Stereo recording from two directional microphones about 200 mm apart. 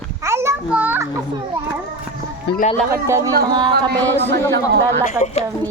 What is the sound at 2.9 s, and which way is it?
Speech, 15° right (ahead or behind).